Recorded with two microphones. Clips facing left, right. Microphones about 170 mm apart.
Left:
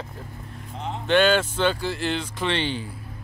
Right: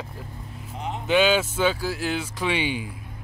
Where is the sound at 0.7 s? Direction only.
10° right (ahead or behind).